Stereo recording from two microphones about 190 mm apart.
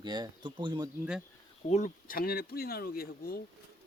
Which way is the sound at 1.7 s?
40° left (ahead or behind).